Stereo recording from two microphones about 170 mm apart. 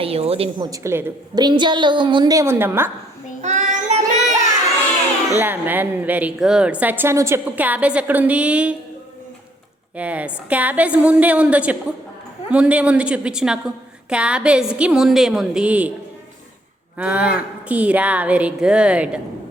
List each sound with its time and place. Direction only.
0.0 s a woman's voice: 35° right (ahead or behind)
0.6 s a woman's voice: 20° right (ahead or behind)
1.4 s a woman's voice: 25° right (ahead or behind)
3.4 s child singing: 45° right (ahead or behind)
5.4 s a woman's voice: 10° right (ahead or behind)
9.9 s a woman's voice: 10° right (ahead or behind)
17.0 s a woman's voice: 10° right (ahead or behind)